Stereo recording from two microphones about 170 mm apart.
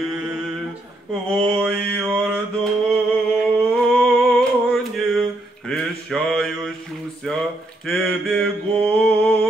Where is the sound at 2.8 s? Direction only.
5° left (ahead or behind).